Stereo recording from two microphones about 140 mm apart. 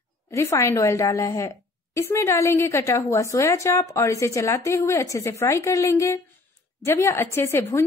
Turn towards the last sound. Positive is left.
turn(degrees=15)  # may be behind; listen again after turning